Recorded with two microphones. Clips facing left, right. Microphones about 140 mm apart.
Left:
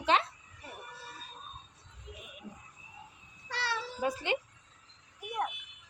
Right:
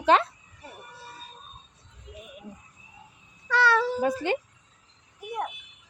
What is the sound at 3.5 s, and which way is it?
Meow, 50° right (ahead or behind).